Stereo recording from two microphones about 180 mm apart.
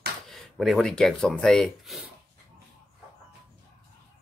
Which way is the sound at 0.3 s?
Centre (ahead or behind).